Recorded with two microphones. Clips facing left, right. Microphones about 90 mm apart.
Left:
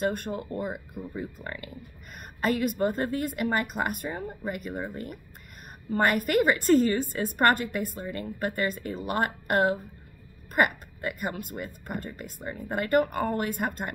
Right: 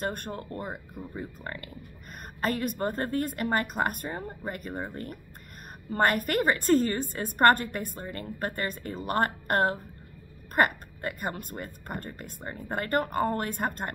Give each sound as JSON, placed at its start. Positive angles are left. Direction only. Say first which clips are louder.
{"t": 0.0, "sound": "speech", "louder": "left 4 dB", "side_deg": -45}
{"t": 0.3, "sound": "speech", "louder": "left 4 dB", "side_deg": 15}
{"t": 1.1, "sound": "a woman's voice", "louder": "left 1 dB", "side_deg": -35}
{"t": 5.9, "sound": "a woman's voice", "louder": "left 1 dB", "side_deg": -40}